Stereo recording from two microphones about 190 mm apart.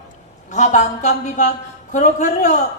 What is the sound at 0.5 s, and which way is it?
A man's voice, 40° left (ahead or behind).